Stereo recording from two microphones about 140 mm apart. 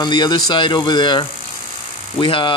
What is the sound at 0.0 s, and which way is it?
Speech, 30° left (ahead or behind).